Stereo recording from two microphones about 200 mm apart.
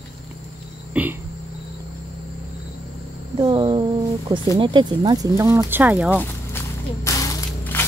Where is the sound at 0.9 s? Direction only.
5° right (ahead or behind).